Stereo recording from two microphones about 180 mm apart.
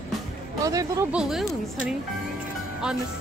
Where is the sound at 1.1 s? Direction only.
Centre (ahead or behind).